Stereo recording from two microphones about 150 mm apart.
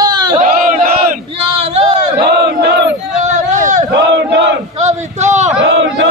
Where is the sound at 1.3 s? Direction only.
40° right (ahead or behind).